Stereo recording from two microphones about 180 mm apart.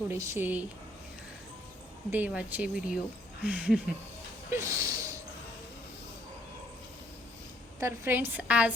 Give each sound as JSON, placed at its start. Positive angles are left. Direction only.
{"t": 0.1, "sound": "speech", "side_deg": -15}
{"t": 2.0, "sound": "speech", "side_deg": -10}
{"t": 4.5, "sound": "a sound", "side_deg": -15}
{"t": 7.8, "sound": "speech", "side_deg": -15}